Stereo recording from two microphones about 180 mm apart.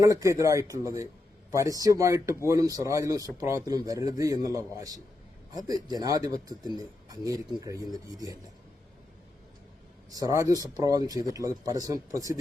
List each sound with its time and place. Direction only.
0.0 s speech: 15° right (ahead or behind)
10.1 s speech: 20° right (ahead or behind)